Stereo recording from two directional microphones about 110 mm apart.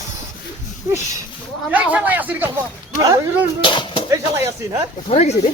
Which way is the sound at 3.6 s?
45° left (ahead or behind).